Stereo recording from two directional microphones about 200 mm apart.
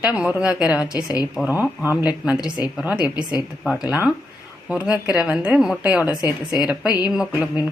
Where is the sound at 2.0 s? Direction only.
5° right (ahead or behind).